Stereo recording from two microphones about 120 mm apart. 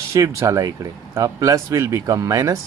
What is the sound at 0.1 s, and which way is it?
Speech, 25° right (ahead or behind).